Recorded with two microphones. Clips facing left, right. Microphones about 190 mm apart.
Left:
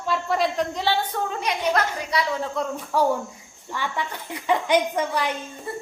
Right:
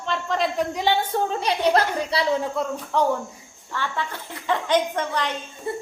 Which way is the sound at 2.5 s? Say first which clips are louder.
Even; 5° left (ahead or behind).